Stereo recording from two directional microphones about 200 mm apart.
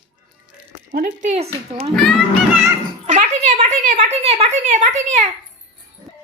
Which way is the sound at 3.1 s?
35° right (ahead or behind).